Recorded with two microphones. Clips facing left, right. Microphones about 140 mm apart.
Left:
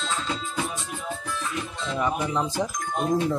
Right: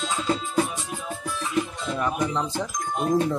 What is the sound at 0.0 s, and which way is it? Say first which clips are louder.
Music: right 4 dB; 10° right (ahead or behind).